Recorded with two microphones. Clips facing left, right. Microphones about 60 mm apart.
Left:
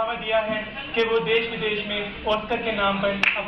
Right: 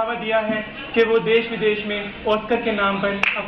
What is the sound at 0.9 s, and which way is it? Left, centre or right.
Speech, right.